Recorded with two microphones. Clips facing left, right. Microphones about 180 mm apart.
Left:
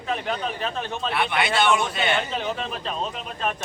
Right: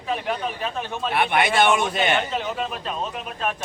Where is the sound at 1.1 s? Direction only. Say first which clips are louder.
Right 4 dB; 50° right (ahead or behind).